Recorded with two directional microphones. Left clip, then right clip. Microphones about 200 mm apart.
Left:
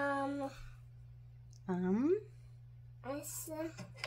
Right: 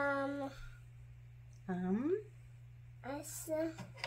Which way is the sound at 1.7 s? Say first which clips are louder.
Left 4 dB; 40° left (ahead or behind).